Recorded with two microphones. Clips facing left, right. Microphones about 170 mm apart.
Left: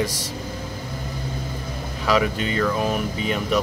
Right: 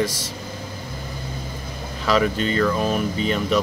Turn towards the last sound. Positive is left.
turn(degrees=10)  # may be behind; listen again after turning